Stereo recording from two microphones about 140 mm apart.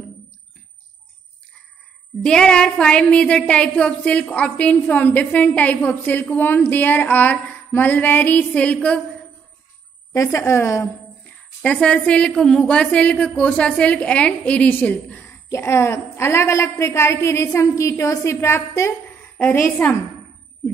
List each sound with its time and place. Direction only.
2.2 s a woman's voice: 5° left (ahead or behind)
10.1 s a woman's voice: 20° left (ahead or behind)